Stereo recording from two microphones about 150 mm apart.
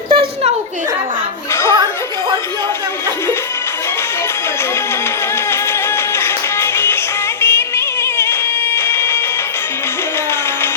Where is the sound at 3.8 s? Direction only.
15° left (ahead or behind).